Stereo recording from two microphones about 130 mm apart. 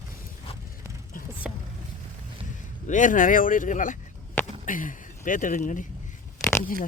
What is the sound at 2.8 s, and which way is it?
Speech, 80° left.